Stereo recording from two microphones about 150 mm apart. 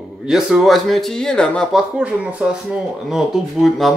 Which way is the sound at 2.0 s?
10° right (ahead or behind).